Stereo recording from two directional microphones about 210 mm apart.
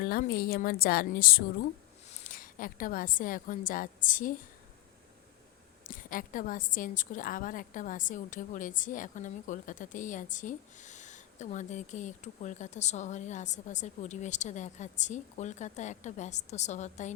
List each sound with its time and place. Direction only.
0.0 s a woman's voice: 45° left (ahead or behind)
5.9 s a woman's voice: 40° left (ahead or behind)